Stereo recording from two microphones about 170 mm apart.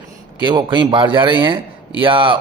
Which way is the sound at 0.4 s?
30° right (ahead or behind).